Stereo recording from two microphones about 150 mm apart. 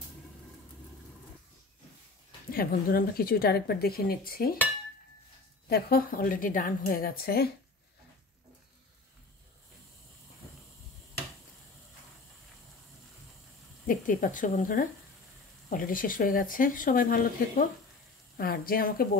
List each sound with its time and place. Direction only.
2.5 s a woman's voice: 75° left (ahead or behind)
5.7 s speech: 90° left
13.8 s speech: 65° left (ahead or behind)